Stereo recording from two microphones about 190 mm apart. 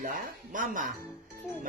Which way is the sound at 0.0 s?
45° right (ahead or behind).